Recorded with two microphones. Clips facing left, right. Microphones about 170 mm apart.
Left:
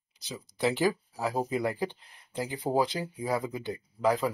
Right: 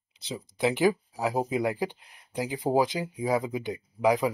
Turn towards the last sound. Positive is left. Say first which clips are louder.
# right 3 dB
turn(degrees=-15)  # may be behind; listen again after turning